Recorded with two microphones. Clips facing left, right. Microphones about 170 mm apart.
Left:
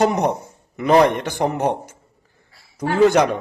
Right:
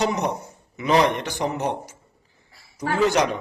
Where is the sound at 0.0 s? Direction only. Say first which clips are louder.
Left 5 dB; 55° left (ahead or behind).